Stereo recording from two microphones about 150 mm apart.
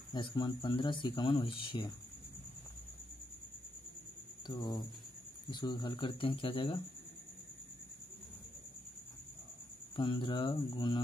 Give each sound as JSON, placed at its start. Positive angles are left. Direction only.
{"t": 0.1, "sound": "speech", "side_deg": 30}
{"t": 4.5, "sound": "speech", "side_deg": 25}
{"t": 9.9, "sound": "speech", "side_deg": 35}